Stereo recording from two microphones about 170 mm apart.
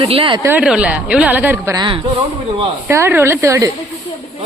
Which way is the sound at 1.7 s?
25° right (ahead or behind).